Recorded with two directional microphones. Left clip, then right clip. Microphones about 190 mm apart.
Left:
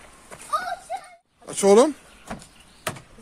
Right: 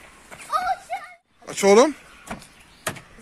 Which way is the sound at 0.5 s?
45° left (ahead or behind).